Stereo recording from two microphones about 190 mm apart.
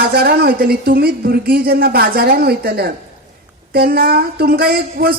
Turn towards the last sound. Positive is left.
turn(degrees=-50)  # may be behind; listen again after turning